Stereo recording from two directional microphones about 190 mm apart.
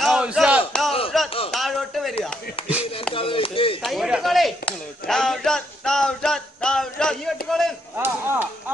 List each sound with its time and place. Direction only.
0.0 s battle cry: 5° right (ahead or behind)
1.1 s a sound: centre (ahead or behind)
3.2 s chop: 30° left (ahead or behind)
3.8 s a sound: centre (ahead or behind)
7.4 s chop: centre (ahead or behind)
8.0 s chop: 10° right (ahead or behind)